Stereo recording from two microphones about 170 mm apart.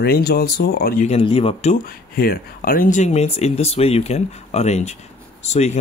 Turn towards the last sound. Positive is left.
turn(degrees=40)  # may be behind; listen again after turning